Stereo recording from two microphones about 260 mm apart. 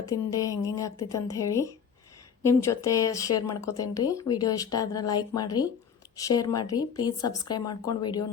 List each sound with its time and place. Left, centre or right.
0.1 s speech: centre